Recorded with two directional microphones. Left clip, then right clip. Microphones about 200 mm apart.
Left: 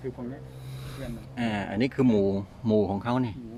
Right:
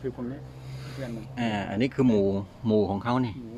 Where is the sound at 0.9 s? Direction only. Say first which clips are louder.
Right 3 dB; 5° left (ahead or behind).